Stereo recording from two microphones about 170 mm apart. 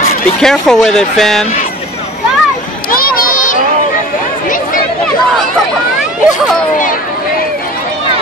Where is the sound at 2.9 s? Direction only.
55° left (ahead or behind).